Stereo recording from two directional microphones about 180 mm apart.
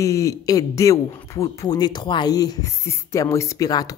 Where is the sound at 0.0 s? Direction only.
15° left (ahead or behind).